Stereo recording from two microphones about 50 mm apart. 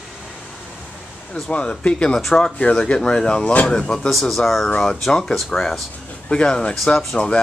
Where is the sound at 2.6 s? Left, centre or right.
Left.